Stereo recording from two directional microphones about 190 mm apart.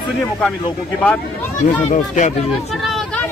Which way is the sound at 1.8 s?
40° left (ahead or behind).